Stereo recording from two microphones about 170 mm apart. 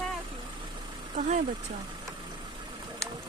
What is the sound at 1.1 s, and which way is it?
Speech, 50° right (ahead or behind).